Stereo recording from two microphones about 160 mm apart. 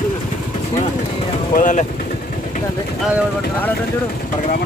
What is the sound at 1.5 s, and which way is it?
Speech, 55° left (ahead or behind).